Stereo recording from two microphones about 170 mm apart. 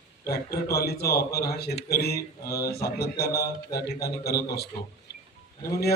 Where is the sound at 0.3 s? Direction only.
65° left (ahead or behind).